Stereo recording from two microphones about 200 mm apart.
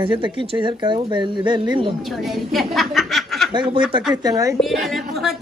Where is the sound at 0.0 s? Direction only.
25° right (ahead or behind).